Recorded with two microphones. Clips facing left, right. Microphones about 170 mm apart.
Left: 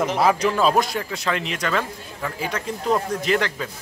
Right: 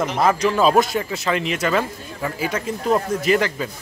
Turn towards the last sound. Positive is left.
turn(degrees=-5)  # may be behind; listen again after turning